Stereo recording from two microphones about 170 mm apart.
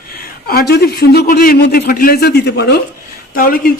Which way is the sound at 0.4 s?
65° left (ahead or behind).